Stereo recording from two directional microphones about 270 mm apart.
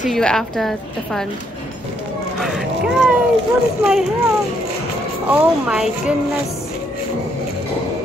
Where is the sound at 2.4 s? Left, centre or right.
Centre.